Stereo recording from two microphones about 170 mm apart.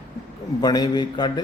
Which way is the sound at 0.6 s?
25° left (ahead or behind).